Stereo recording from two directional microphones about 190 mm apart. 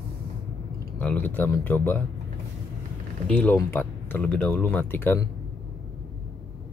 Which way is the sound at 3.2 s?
5° left (ahead or behind).